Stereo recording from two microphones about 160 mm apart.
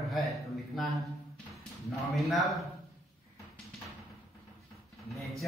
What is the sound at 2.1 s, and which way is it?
Speech, centre (ahead or behind).